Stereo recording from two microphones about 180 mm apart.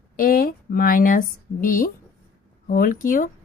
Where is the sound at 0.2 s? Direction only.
55° left (ahead or behind).